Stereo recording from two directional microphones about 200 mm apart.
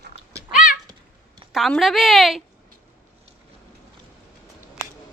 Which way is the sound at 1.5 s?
Centre (ahead or behind).